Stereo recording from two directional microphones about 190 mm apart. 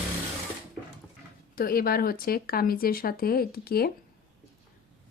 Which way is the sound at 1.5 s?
50° left (ahead or behind).